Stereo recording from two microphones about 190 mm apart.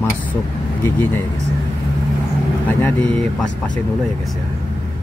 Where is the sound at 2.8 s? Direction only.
5° left (ahead or behind).